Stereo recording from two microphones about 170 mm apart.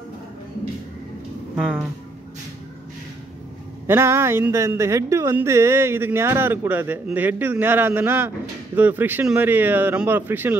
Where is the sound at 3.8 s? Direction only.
15° right (ahead or behind).